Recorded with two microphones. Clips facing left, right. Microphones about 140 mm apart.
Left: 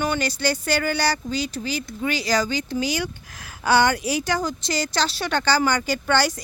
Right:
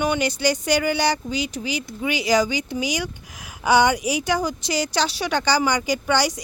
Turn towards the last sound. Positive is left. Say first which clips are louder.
# even
turn(degrees=-15)  # may be behind; listen again after turning